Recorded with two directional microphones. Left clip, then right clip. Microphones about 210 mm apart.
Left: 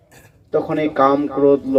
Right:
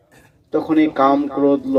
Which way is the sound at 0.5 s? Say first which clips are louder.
Right 1 dB; 40° right (ahead or behind).